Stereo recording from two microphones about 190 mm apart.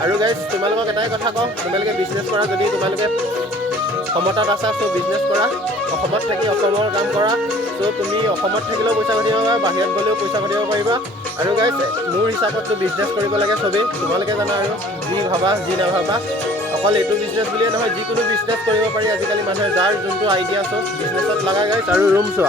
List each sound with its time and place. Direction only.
0.0 s speech: 25° right (ahead or behind)
4.4 s speech: 25° right (ahead or behind)
8.8 s speech: 20° right (ahead or behind)
19.8 s speech: 25° right (ahead or behind)
21.8 s speech: 10° right (ahead or behind)